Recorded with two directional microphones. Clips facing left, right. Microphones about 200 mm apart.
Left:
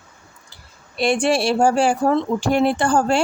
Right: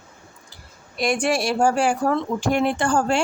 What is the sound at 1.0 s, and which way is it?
Speech, 30° left (ahead or behind).